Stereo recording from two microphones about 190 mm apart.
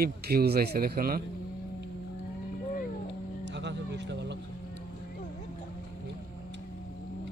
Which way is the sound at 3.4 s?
65° right (ahead or behind).